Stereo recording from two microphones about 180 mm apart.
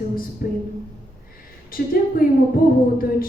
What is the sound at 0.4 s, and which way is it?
Music, 55° left (ahead or behind).